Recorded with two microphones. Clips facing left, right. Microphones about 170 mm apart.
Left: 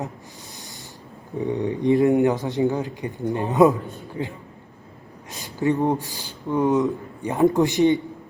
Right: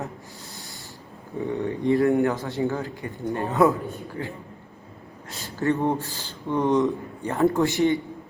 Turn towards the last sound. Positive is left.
turn(degrees=15)  # may be behind; listen again after turning